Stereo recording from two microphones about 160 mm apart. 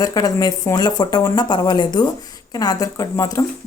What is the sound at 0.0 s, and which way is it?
A woman's voice, 20° left (ahead or behind).